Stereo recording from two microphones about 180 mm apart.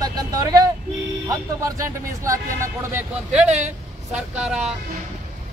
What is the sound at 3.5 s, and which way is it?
Speech, 40° right (ahead or behind).